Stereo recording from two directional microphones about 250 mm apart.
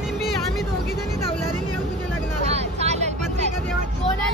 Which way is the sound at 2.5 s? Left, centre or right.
Right.